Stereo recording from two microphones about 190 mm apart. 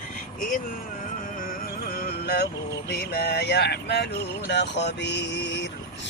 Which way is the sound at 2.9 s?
55° left (ahead or behind).